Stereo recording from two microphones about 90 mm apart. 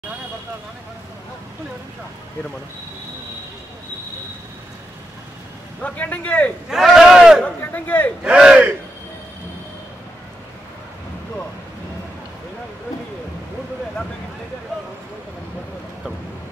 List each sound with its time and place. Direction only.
5.8 s speech: 15° left (ahead or behind)
6.7 s speech: 5° right (ahead or behind)
7.4 s speech: 20° left (ahead or behind)
8.2 s a man's voice: 10° right (ahead or behind)